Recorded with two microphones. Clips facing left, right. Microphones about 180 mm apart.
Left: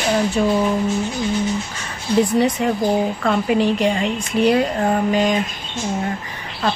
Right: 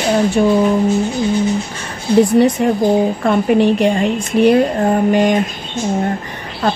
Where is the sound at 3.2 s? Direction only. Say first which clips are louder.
Right 5 dB; 50° right (ahead or behind).